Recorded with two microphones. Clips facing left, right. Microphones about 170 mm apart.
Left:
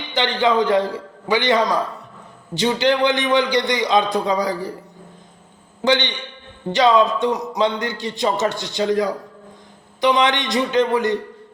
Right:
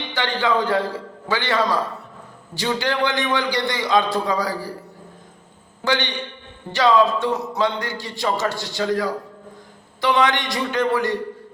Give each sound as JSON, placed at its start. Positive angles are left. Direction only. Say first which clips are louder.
{"t": 0.1, "sound": "a man's voice", "louder": "left 3 dB", "side_deg": 20}
{"t": 5.8, "sound": "a man's voice", "louder": "left 4 dB", "side_deg": 20}